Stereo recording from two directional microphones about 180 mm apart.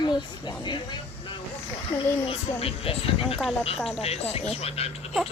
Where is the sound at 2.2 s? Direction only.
30° left (ahead or behind).